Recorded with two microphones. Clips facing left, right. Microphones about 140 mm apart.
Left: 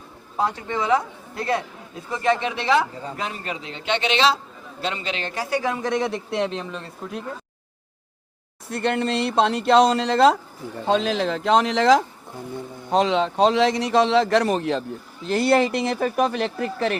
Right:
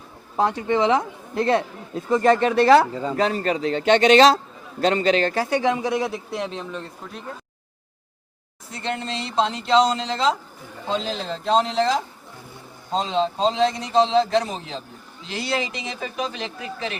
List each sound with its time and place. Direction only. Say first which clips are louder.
0.3 s speech: right 4 dB; 20° right (ahead or behind)
2.1 s a man's voice: right 6 dB; 45° right (ahead or behind); by 7.2 s centre (ahead or behind)
8.7 s a man's voice: left 6 dB; 65° left (ahead or behind); by 11.9 s 85° left
12.9 s a man's voice: left 3 dB; 70° left (ahead or behind); by 17.0 s 55° left (ahead or behind)